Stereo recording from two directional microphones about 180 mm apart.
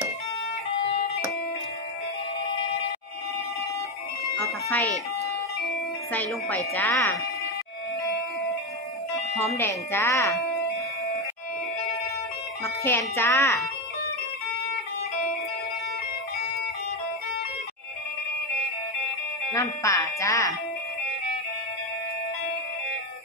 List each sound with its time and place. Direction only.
6.1 s speech: 10° left (ahead or behind)
9.6 s speech: 15° left (ahead or behind)
12.8 s speech: 15° left (ahead or behind)
19.5 s speech: 15° left (ahead or behind)